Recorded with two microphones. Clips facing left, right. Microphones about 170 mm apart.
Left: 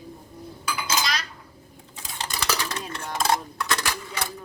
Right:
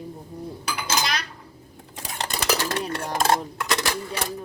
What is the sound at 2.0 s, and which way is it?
Dishes, 65° right (ahead or behind).